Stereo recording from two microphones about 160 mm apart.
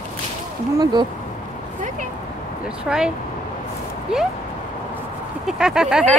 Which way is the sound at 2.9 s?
5° right (ahead or behind).